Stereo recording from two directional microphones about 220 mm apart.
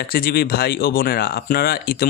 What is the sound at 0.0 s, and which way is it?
Speech, 45° left (ahead or behind).